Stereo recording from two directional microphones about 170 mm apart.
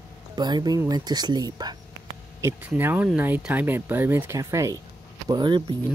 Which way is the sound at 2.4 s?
10° right (ahead or behind).